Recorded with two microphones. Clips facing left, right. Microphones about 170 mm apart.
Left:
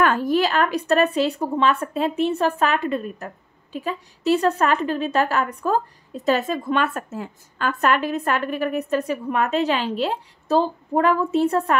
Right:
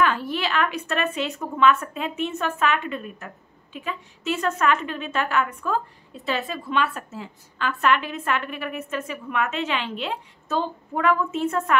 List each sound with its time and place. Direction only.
0.0 s a woman's voice: 45° left (ahead or behind)